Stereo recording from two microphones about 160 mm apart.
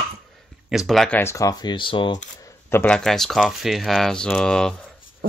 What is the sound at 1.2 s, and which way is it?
Speech, 20° left (ahead or behind).